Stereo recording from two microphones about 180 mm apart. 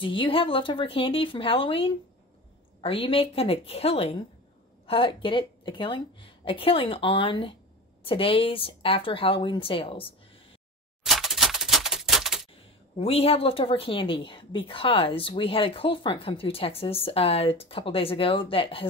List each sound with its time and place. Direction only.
0.0 s a woman's voice: 30° left (ahead or behind)
11.1 s typewriter: centre (ahead or behind)
12.9 s a woman's voice: 30° left (ahead or behind)